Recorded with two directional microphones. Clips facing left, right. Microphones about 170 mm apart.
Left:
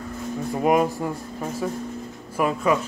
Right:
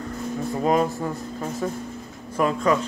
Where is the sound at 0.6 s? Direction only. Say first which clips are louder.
Left 2 dB; 10° left (ahead or behind).